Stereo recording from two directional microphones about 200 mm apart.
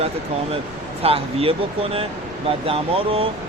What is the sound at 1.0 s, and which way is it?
Speech, 30° right (ahead or behind).